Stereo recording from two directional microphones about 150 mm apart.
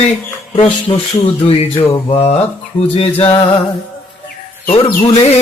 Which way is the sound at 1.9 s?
35° left (ahead or behind).